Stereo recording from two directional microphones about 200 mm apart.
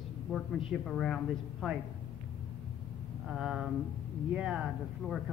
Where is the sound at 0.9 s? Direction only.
Centre (ahead or behind).